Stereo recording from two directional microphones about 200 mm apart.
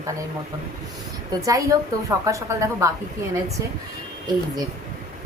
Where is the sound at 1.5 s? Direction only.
15° right (ahead or behind).